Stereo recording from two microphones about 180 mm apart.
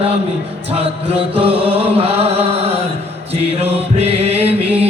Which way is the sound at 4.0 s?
35° right (ahead or behind).